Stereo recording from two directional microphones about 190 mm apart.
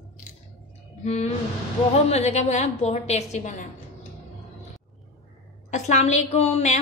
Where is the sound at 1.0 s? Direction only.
35° left (ahead or behind).